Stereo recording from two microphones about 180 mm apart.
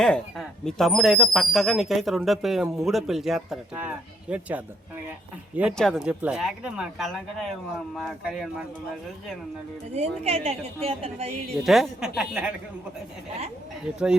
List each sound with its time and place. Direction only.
0.0 s speech: 5° left (ahead or behind)
5.7 s speech: centre (ahead or behind)
9.9 s a woman's voice: 35° right (ahead or behind)
11.6 s speech: centre (ahead or behind)